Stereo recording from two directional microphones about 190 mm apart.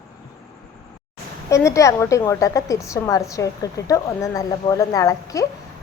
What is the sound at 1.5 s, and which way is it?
A woman's voice, 15° left (ahead or behind).